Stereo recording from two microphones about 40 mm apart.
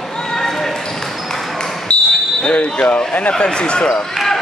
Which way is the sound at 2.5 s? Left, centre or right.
Left.